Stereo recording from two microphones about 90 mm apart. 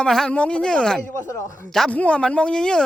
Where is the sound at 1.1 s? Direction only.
30° left (ahead or behind).